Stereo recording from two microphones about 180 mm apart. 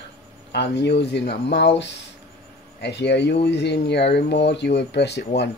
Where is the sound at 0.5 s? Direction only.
70° left (ahead or behind).